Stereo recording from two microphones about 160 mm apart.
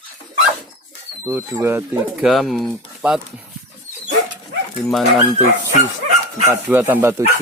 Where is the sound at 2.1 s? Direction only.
Centre (ahead or behind).